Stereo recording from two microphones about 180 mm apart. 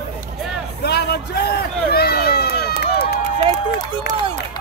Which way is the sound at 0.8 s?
65° left (ahead or behind).